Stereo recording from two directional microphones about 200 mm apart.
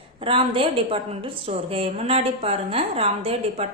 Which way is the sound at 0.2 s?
25° right (ahead or behind).